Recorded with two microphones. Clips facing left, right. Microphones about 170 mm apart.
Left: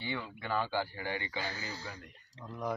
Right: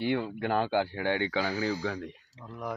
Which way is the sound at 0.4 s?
65° right (ahead or behind).